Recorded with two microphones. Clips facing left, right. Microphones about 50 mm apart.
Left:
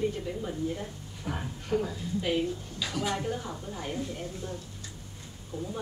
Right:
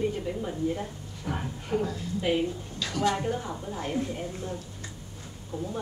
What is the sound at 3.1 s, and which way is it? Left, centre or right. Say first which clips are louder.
Speech: right 3 dB; centre.